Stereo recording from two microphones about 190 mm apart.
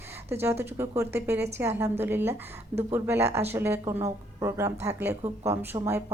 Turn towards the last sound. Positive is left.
turn(degrees=-15)  # may be behind; listen again after turning